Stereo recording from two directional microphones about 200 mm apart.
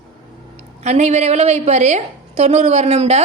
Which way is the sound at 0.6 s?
35° right (ahead or behind).